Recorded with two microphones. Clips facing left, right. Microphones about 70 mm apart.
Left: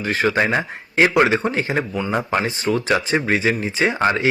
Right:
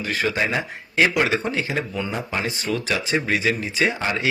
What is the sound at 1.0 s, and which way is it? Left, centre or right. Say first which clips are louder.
Speech: left 5 dB; left.